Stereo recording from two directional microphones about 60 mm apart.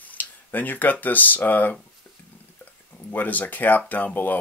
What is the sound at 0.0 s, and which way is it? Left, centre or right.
Speech, left.